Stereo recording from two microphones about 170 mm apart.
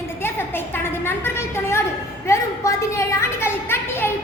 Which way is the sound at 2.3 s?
20° left (ahead or behind).